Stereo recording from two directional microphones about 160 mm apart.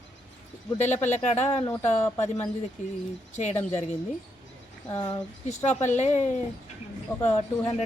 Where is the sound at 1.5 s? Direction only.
30° left (ahead or behind).